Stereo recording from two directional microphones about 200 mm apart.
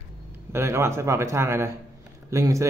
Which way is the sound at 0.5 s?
15° right (ahead or behind).